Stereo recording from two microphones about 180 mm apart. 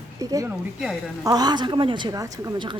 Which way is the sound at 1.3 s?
20° right (ahead or behind).